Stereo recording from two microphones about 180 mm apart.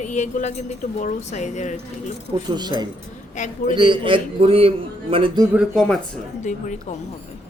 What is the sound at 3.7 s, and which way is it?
A man's voice, 30° right (ahead or behind).